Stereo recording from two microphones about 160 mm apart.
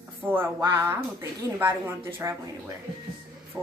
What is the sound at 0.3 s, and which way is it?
A woman's voice, 15° right (ahead or behind).